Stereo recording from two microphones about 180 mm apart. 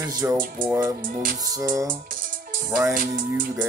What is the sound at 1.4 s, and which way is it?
Speech, 20° right (ahead or behind).